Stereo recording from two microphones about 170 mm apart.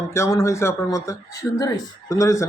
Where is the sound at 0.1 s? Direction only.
15° left (ahead or behind).